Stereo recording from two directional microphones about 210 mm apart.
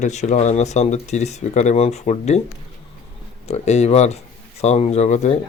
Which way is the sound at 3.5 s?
30° left (ahead or behind).